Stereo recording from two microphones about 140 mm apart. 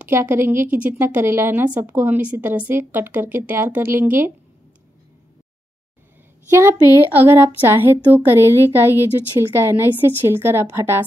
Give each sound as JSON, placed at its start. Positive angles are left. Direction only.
{"t": 0.0, "sound": "a woman's voice", "side_deg": -15}
{"t": 6.5, "sound": "a woman's voice", "side_deg": -20}